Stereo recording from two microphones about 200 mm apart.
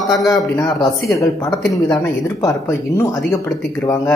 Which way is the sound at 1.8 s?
15° left (ahead or behind).